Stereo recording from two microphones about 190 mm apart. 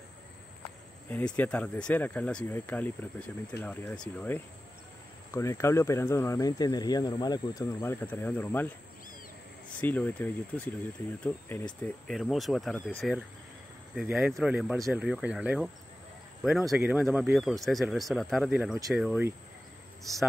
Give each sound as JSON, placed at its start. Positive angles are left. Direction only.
{"t": 1.1, "sound": "speech", "side_deg": 10}
{"t": 9.8, "sound": "speech", "side_deg": 10}
{"t": 11.8, "sound": "speech", "side_deg": 0}